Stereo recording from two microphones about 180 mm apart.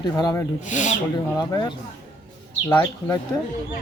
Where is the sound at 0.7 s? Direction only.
45° left (ahead or behind).